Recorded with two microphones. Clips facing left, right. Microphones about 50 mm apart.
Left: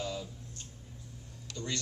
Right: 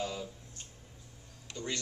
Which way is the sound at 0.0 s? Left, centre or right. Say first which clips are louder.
Even; right.